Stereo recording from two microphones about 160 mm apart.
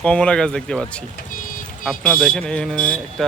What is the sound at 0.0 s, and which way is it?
Speech, 5° left (ahead or behind).